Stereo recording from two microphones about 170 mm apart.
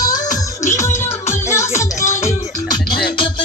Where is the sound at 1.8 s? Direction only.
45° left (ahead or behind).